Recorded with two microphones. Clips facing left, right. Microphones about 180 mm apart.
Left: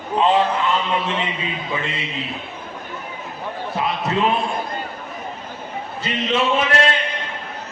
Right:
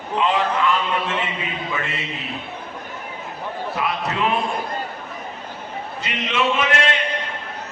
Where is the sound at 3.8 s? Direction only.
25° left (ahead or behind).